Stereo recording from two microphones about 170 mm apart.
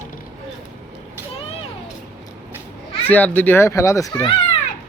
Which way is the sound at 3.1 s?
10° left (ahead or behind).